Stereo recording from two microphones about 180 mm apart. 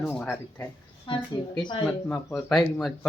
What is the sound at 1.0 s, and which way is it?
Speech, 25° left (ahead or behind).